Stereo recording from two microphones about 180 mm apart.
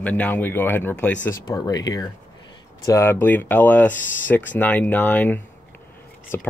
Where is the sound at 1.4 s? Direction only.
20° left (ahead or behind).